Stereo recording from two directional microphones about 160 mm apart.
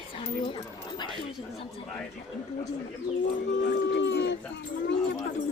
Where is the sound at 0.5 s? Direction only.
30° left (ahead or behind).